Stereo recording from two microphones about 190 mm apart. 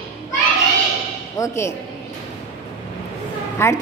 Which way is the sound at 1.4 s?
15° left (ahead or behind).